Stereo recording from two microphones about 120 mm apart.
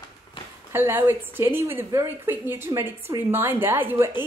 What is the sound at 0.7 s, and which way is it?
A woman's voice, 20° right (ahead or behind).